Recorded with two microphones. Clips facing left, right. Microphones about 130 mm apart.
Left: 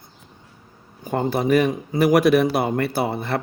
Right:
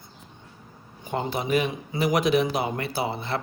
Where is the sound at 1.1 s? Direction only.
45° left (ahead or behind).